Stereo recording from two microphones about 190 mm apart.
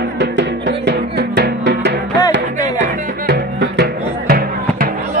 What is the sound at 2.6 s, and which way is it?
Music, 45° right (ahead or behind).